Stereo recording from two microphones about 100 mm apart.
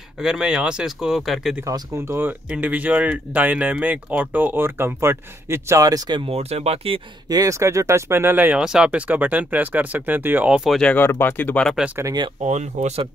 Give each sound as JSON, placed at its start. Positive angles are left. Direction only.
{"t": 0.2, "sound": "speech", "side_deg": -5}
{"t": 1.6, "sound": "speech", "side_deg": -25}
{"t": 6.2, "sound": "speech", "side_deg": -90}
{"t": 7.2, "sound": "speech", "side_deg": -35}
{"t": 10.8, "sound": "speech", "side_deg": 10}
{"t": 11.1, "sound": "speech", "side_deg": 20}
{"t": 12.0, "sound": "speech", "side_deg": -25}